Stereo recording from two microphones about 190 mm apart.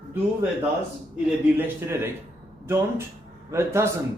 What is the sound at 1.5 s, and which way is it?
Speech, 10° right (ahead or behind).